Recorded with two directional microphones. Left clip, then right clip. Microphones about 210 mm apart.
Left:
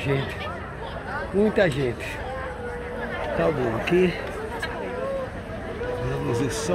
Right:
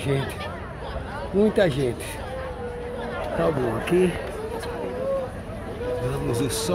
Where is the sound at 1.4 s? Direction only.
20° right (ahead or behind).